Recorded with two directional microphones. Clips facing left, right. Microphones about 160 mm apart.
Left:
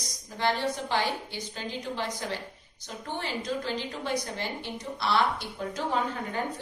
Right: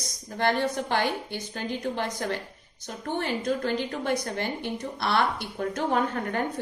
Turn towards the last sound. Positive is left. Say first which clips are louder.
# right 4 dB
turn(degrees=-55)  # may be behind; listen again after turning